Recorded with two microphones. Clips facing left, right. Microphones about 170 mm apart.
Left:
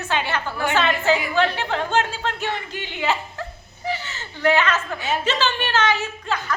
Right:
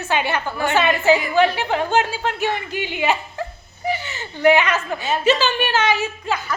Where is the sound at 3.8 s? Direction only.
15° right (ahead or behind).